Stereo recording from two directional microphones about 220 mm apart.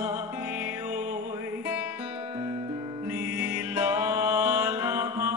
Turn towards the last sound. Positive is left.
turn(degrees=-10)  # may be behind; listen again after turning